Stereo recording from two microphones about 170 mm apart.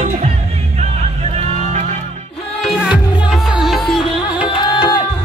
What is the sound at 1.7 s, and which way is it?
Music, 45° right (ahead or behind).